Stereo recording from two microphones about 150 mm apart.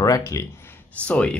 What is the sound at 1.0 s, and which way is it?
Speech, 10° left (ahead or behind).